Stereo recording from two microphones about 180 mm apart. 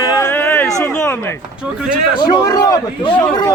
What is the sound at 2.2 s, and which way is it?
Speech, 25° left (ahead or behind).